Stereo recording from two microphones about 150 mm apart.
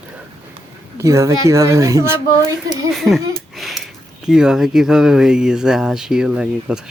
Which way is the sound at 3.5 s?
Centre (ahead or behind).